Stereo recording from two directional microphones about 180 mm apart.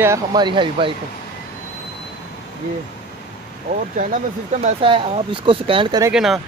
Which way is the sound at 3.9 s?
45° right (ahead or behind).